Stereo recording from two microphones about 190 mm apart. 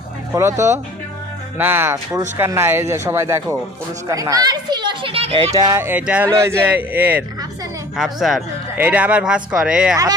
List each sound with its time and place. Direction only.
0.3 s a child's voice: 15° right (ahead or behind)